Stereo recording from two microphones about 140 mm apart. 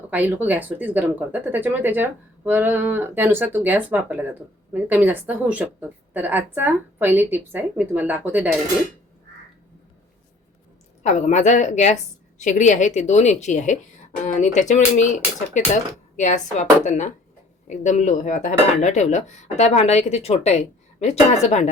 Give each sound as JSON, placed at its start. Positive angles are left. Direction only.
{"t": 0.1, "sound": "speech", "side_deg": -15}
{"t": 11.0, "sound": "speech", "side_deg": 60}